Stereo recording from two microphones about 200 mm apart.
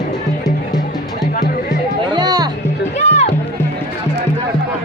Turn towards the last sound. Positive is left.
turn(degrees=35)  # may be behind; listen again after turning